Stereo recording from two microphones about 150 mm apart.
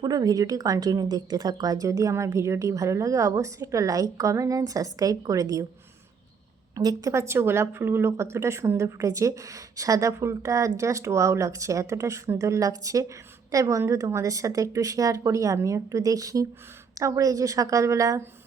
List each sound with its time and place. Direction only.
0.0 s a woman's voice: 25° right (ahead or behind)
6.7 s a woman's voice: 25° right (ahead or behind)